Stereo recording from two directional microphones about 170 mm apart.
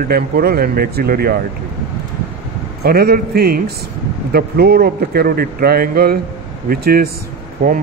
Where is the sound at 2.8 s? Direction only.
65° right (ahead or behind).